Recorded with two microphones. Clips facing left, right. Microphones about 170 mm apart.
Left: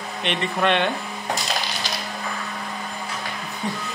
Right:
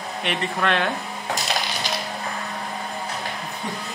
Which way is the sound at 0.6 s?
Centre (ahead or behind).